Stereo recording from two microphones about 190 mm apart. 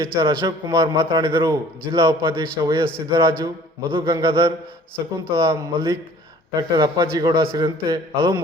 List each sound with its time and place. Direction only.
0.2 s a man's voice: 15° right (ahead or behind)